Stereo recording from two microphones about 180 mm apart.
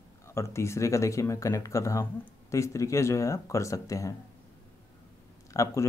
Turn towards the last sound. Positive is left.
turn(degrees=15)  # may be behind; listen again after turning